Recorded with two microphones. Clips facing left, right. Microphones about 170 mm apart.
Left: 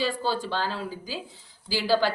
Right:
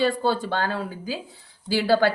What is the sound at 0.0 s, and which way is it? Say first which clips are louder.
A woman's voice: right 5 dB; 55° right (ahead or behind).